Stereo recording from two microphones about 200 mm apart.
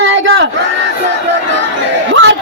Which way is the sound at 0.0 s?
70° right (ahead or behind).